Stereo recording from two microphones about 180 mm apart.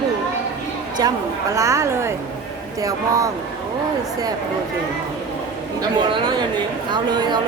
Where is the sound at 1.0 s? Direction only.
20° right (ahead or behind).